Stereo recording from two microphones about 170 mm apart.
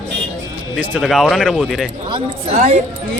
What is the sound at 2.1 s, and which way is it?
Speech, 35° right (ahead or behind).